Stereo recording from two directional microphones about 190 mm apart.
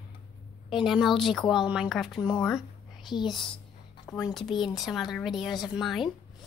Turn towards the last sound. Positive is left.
turn(degrees=0)  # may be behind; listen again after turning